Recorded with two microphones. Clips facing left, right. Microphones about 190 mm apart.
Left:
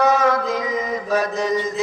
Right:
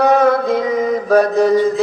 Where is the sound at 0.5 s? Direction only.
60° right (ahead or behind).